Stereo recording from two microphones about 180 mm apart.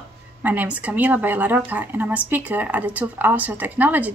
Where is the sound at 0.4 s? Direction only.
10° right (ahead or behind).